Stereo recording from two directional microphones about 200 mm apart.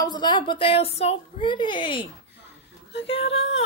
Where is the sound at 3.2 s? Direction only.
75° left (ahead or behind).